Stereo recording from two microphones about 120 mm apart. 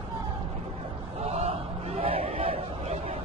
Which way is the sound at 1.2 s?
60° right (ahead or behind).